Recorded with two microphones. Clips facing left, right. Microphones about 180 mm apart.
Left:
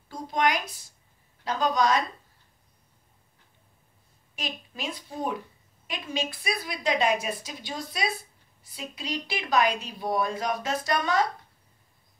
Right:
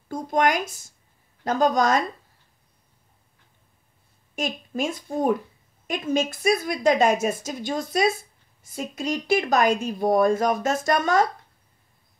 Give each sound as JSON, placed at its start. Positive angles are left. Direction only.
{"t": 0.1, "sound": "a woman's voice", "side_deg": -50}
{"t": 4.4, "sound": "a woman's voice", "side_deg": -45}